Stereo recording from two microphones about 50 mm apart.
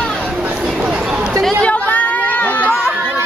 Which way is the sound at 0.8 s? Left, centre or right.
Right.